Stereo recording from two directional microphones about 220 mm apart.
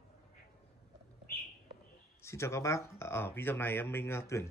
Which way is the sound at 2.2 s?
10° left (ahead or behind).